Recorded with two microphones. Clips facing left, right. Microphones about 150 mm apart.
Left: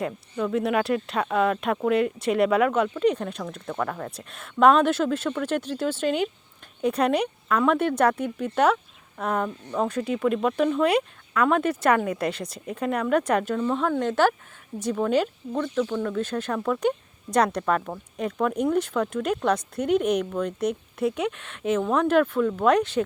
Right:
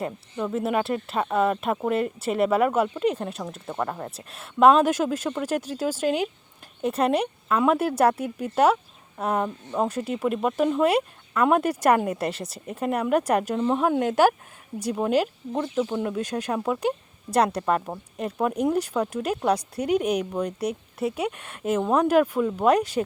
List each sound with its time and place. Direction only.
0.3 s speech: 5° right (ahead or behind)
4.3 s speech: 5° right (ahead or behind)
15.5 s speech: 25° right (ahead or behind)
18.2 s speech: 10° right (ahead or behind)